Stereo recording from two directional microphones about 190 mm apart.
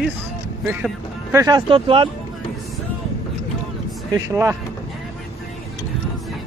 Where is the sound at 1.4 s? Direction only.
25° right (ahead or behind).